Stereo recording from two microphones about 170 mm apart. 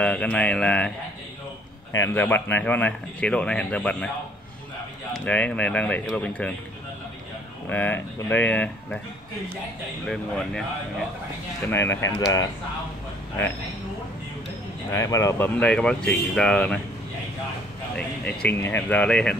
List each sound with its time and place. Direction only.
0.0 s speech: 5° left (ahead or behind)
2.0 s speech: 10° left (ahead or behind)
5.1 s speech: 10° left (ahead or behind)
7.7 s speech: 10° left (ahead or behind)
10.0 s speech: 5° left (ahead or behind)
11.7 s speech: 15° left (ahead or behind)
14.9 s speech: 15° left (ahead or behind)
17.9 s speech: 5° left (ahead or behind)